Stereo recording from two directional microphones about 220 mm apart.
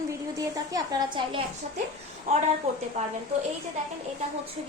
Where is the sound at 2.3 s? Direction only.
30° right (ahead or behind).